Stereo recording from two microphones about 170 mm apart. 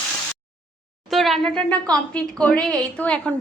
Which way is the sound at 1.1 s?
Centre (ahead or behind).